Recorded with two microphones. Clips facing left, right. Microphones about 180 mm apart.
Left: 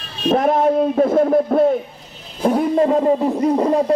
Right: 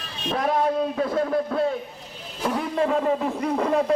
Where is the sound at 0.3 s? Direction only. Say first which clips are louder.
Left 8 dB; 50° left (ahead or behind).